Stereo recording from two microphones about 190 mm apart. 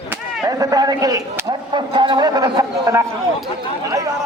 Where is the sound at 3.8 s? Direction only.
15° right (ahead or behind).